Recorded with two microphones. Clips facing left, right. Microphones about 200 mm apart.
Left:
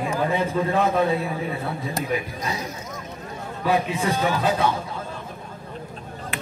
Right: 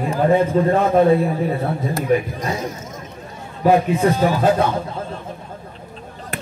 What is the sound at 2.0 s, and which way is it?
Speech, 50° right (ahead or behind).